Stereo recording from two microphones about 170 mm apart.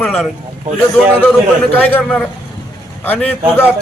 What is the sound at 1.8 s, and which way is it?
Speech, 10° left (ahead or behind).